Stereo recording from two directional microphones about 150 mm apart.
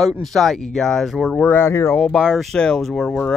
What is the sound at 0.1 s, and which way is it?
Speech, centre (ahead or behind).